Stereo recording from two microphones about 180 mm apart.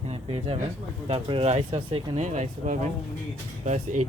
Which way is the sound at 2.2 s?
40° right (ahead or behind).